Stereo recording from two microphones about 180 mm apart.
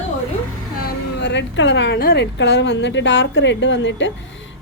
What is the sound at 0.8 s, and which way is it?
A woman's voice, 65° left (ahead or behind).